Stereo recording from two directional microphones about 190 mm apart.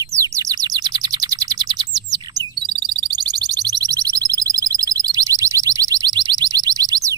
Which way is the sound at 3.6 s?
20° right (ahead or behind).